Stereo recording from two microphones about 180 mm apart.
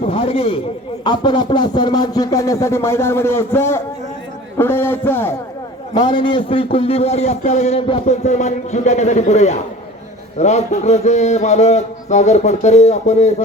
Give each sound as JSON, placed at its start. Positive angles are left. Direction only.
{"t": 0.1, "sound": "a man's voice", "side_deg": 30}
{"t": 4.5, "sound": "a sound", "side_deg": 10}
{"t": 5.9, "sound": "a man's voice", "side_deg": 25}